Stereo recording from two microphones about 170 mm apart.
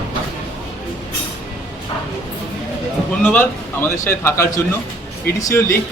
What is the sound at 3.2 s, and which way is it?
A man's voice, 10° left (ahead or behind).